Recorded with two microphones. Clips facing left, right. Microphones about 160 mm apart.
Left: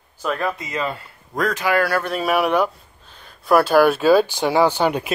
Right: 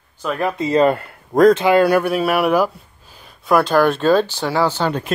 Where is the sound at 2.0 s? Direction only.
Centre (ahead or behind).